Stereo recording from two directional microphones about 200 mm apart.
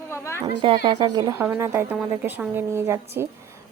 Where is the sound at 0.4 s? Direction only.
25° right (ahead or behind).